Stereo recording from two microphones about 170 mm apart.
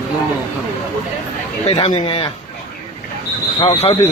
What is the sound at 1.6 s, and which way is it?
Speech, 35° left (ahead or behind).